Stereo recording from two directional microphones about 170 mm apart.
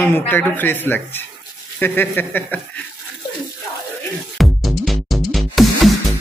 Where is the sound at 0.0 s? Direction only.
10° left (ahead or behind).